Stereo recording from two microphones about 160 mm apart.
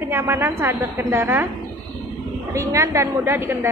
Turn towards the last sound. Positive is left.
turn(degrees=-15)  # may be behind; listen again after turning